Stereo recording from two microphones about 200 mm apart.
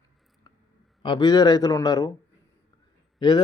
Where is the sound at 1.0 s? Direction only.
20° left (ahead or behind).